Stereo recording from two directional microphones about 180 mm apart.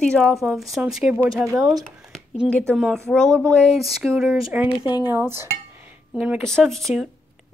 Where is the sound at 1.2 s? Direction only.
15° right (ahead or behind).